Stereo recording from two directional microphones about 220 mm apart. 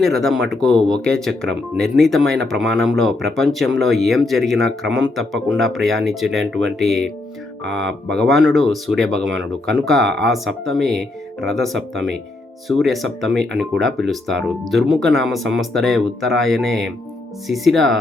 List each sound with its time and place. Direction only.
0.0 s speech: centre (ahead or behind)